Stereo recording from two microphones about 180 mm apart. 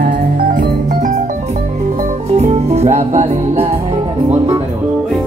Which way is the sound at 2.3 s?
35° right (ahead or behind).